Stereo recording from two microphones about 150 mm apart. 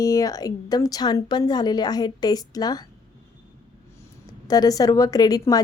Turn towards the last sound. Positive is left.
turn(degrees=25)  # may be behind; listen again after turning